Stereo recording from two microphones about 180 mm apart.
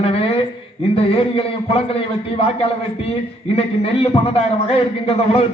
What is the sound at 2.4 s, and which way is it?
Speech, 35° left (ahead or behind).